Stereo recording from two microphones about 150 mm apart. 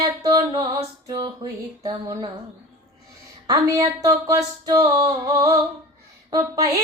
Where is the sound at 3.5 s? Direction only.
25° right (ahead or behind).